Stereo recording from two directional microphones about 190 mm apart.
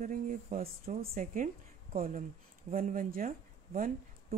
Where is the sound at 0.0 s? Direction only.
45° right (ahead or behind).